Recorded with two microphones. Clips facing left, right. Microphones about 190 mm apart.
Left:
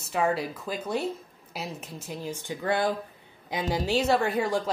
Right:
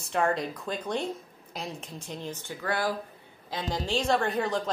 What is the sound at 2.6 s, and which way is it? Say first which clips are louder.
Speech: left 3 dB; 25° left (ahead or behind).